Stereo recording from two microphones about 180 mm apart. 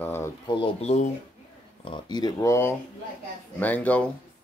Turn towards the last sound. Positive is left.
turn(degrees=10)  # may be behind; listen again after turning